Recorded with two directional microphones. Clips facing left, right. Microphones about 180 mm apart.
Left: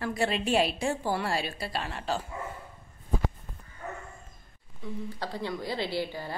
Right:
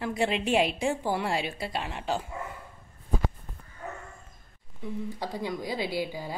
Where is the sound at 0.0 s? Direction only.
15° right (ahead or behind).